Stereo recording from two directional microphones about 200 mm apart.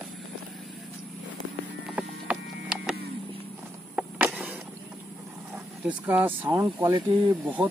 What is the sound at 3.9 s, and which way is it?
Vehicle, 5° right (ahead or behind).